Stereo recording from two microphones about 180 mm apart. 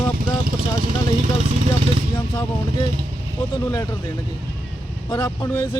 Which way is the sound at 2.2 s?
25° left (ahead or behind).